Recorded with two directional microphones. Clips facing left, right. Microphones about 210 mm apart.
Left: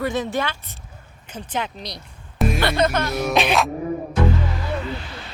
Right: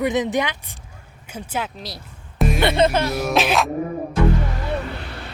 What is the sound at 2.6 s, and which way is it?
Speech, 25° right (ahead or behind).